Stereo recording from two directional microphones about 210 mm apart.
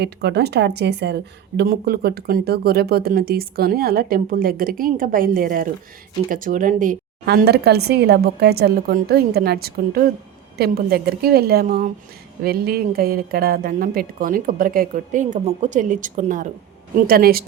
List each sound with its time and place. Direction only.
0.0 s a woman's voice: 50° right (ahead or behind)